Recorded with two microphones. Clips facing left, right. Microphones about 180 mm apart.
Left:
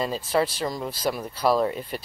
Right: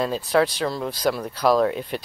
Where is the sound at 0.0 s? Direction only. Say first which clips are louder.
Right 3 dB; centre (ahead or behind).